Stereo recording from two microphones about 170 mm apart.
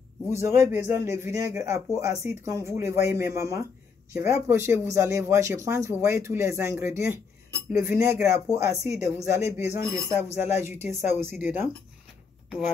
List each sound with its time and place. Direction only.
0.4 s a man's voice: 15° right (ahead or behind)
12.4 s speech: centre (ahead or behind)